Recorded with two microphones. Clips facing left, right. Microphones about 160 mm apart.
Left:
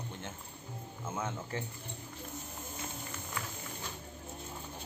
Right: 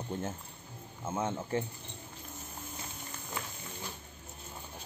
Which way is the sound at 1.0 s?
25° right (ahead or behind).